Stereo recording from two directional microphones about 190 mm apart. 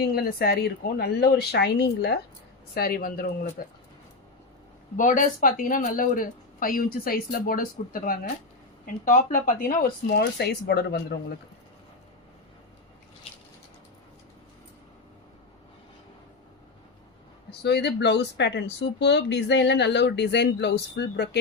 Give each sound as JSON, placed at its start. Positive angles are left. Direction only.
{"t": 0.0, "sound": "speech", "side_deg": 55}
{"t": 4.9, "sound": "speech", "side_deg": 40}
{"t": 17.5, "sound": "speech", "side_deg": 60}